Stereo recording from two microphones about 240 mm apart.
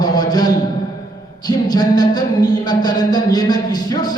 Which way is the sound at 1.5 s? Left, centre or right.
Centre.